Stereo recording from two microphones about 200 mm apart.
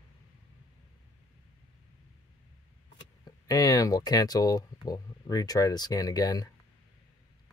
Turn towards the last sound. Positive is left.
turn(degrees=20)  # may be behind; listen again after turning